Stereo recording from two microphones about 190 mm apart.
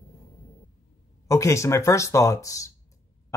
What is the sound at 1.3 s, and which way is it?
Speech, 15° left (ahead or behind).